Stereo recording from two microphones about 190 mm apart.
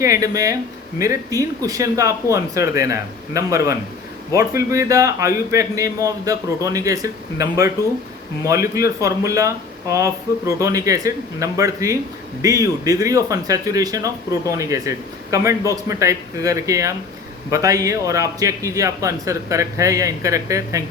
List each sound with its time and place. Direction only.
0.0 s a man's voice: 15° right (ahead or behind)